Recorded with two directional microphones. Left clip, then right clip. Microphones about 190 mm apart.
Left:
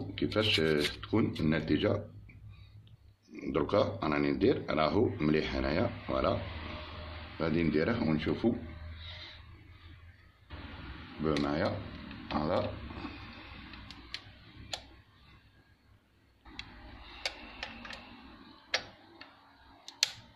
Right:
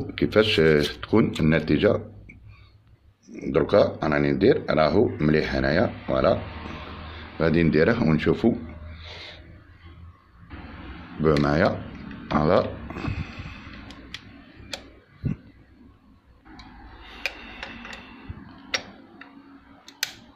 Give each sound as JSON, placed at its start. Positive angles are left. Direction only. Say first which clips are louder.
{"t": 0.1, "sound": "speech", "louder": "right 9 dB", "side_deg": -40}
{"t": 3.3, "sound": "speech", "louder": "right 10 dB", "side_deg": -25}
{"t": 7.3, "sound": "speech", "louder": "right 10 dB", "side_deg": -35}
{"t": 11.2, "sound": "speech", "louder": "right 11 dB", "side_deg": -45}